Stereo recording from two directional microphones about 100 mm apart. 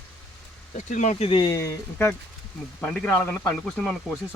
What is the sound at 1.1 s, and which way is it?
Speech, 70° left (ahead or behind).